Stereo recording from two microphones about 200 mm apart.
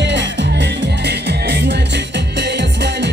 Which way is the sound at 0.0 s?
60° right (ahead or behind).